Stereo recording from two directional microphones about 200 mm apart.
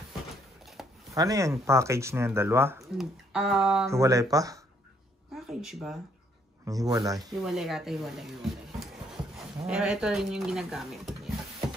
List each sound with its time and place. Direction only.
0.8 s a sound: centre (ahead or behind)
1.1 s speech: 15° right (ahead or behind)
3.0 s speech: centre (ahead or behind)
3.9 s speech: 15° right (ahead or behind)
5.5 s speech: centre (ahead or behind)
6.6 s speech: 20° right (ahead or behind)
7.4 s speech: centre (ahead or behind)
9.7 s speech: 5° right (ahead or behind)